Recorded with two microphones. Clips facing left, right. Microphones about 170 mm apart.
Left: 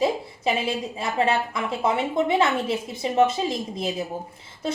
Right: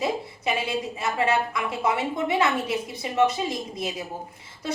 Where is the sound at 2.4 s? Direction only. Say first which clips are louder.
Left 2 dB; 30° left (ahead or behind).